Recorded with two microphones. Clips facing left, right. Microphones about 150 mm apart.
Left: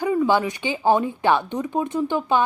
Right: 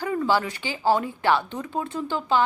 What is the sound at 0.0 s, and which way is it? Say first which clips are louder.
A woman's voice: left 4 dB; 15° left (ahead or behind).